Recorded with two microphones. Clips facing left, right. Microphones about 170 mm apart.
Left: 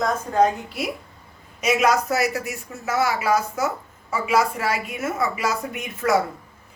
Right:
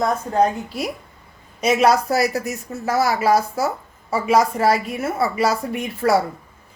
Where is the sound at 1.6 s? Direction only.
35° right (ahead or behind).